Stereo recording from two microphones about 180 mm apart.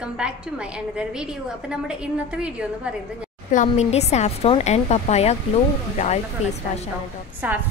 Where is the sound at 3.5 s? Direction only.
40° left (ahead or behind).